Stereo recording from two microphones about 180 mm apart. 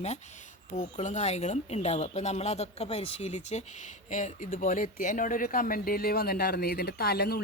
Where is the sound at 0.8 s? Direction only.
40° left (ahead or behind).